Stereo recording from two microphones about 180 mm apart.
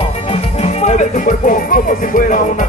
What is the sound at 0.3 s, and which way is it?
Music, 35° left (ahead or behind).